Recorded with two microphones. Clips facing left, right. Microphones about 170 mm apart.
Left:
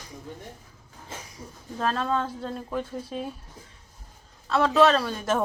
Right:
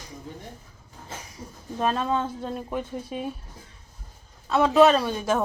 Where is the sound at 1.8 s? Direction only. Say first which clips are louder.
Right 1 dB; 10° right (ahead or behind).